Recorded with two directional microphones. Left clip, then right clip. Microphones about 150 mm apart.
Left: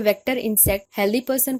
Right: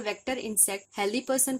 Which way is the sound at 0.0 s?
45° left (ahead or behind).